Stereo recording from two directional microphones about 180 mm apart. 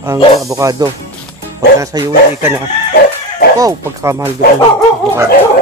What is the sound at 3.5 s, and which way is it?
Speech, 15° right (ahead or behind).